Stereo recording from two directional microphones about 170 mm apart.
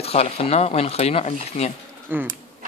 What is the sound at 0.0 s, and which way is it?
Speech, 35° left (ahead or behind).